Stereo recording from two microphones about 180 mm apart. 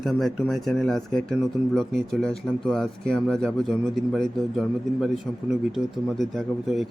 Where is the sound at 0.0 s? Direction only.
Centre (ahead or behind).